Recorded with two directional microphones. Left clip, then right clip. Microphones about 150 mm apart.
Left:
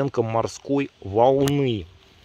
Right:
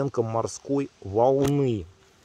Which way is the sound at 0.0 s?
20° left (ahead or behind).